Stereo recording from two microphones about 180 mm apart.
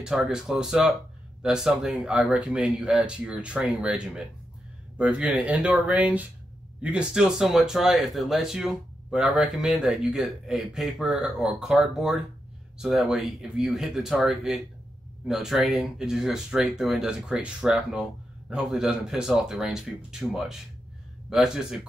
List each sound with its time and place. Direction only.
0.0 s speech: 5° right (ahead or behind)